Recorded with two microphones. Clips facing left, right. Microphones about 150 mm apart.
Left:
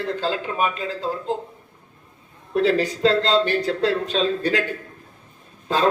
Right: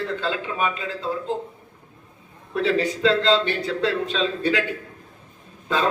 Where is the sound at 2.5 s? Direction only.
35° left (ahead or behind).